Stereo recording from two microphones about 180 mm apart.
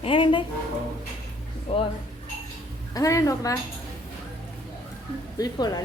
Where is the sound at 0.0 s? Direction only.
30° left (ahead or behind).